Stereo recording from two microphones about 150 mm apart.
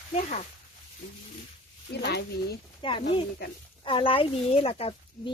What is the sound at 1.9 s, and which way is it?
Speech, 90° left.